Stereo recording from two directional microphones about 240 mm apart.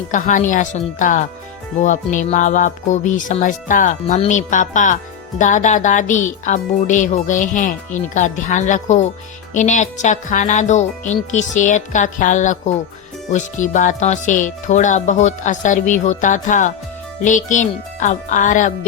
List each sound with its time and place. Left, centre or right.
0.1 s speech: left